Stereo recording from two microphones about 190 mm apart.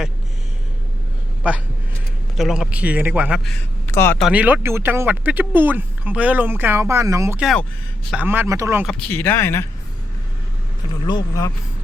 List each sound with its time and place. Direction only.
2.3 s speech: centre (ahead or behind)
3.8 s speech: 10° left (ahead or behind)
4.2 s speech: 5° right (ahead or behind)
7.3 s speech: centre (ahead or behind)
8.9 s speech: 10° left (ahead or behind)
11.0 s speech: 20° left (ahead or behind)